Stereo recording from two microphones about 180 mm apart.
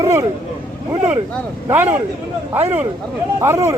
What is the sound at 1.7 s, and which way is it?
Speech, 15° right (ahead or behind).